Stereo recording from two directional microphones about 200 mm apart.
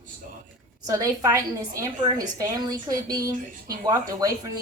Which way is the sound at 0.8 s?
20° right (ahead or behind).